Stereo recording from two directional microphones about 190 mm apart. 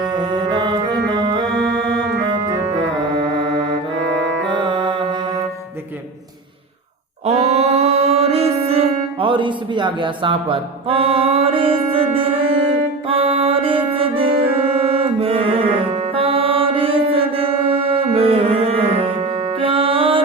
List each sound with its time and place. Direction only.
0.0 s music: 25° right (ahead or behind)
4.4 s music: 25° right (ahead or behind)
7.3 s music: 35° right (ahead or behind)